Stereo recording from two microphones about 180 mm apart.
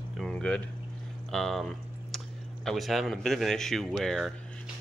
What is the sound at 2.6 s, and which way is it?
Speech, centre (ahead or behind).